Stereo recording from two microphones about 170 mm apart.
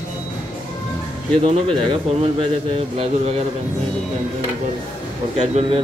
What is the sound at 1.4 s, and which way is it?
Speech, 30° right (ahead or behind).